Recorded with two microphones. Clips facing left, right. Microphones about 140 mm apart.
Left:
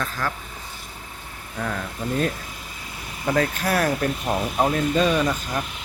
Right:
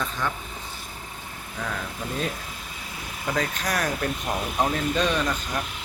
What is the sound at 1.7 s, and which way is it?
Speech, centre (ahead or behind).